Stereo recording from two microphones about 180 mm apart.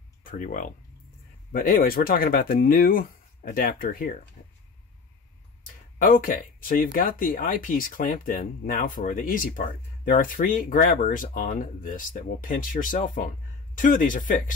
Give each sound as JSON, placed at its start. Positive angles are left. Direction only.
{"t": 0.2, "sound": "speech", "side_deg": 45}
{"t": 5.9, "sound": "speech", "side_deg": 50}